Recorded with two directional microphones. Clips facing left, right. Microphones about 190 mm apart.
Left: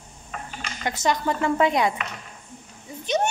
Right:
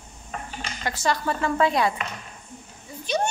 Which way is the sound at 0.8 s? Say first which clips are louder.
Left 2 dB; 20° left (ahead or behind).